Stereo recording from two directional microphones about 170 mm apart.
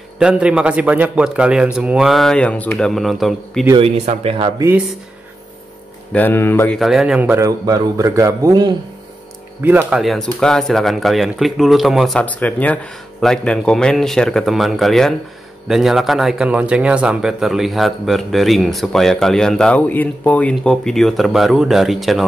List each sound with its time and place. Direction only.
0.2 s speech: 5° right (ahead or behind)
3.7 s speech: 35° right (ahead or behind)
4.6 s a man's voice: 15° right (ahead or behind)
6.1 s speech: 10° left (ahead or behind)
6.8 s a man's voice: centre (ahead or behind); by 8.7 s 20° right (ahead or behind)
9.6 s speech: 10° right (ahead or behind)